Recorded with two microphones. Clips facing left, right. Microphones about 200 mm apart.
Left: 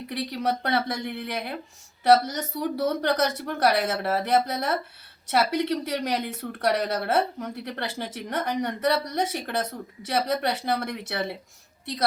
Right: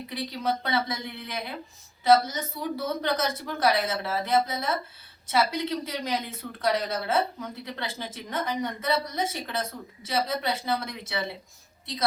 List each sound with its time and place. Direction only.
0.1 s speech: 70° left (ahead or behind)